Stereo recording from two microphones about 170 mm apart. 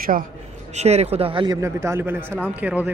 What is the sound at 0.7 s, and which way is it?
A man's voice, 40° right (ahead or behind).